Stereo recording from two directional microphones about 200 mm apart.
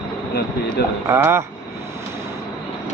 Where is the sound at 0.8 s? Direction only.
55° left (ahead or behind).